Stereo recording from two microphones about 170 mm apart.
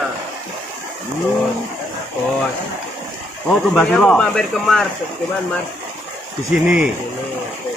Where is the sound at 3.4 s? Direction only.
5° left (ahead or behind).